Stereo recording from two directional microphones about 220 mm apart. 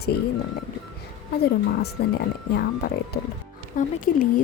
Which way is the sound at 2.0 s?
45° left (ahead or behind).